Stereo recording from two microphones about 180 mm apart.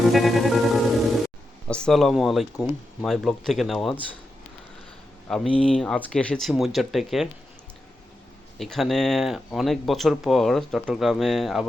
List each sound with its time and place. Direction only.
0.1 s music: centre (ahead or behind)
1.6 s speech: 5° left (ahead or behind)
5.3 s speech: 5° left (ahead or behind)
8.5 s speech: centre (ahead or behind)